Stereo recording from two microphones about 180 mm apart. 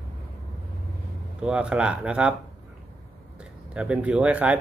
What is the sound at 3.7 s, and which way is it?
Speech, 5° right (ahead or behind).